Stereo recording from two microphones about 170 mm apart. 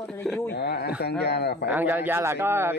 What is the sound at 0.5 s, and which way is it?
Speech, 75° left (ahead or behind).